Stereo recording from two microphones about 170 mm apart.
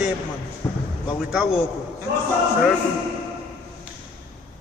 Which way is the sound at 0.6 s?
15° left (ahead or behind).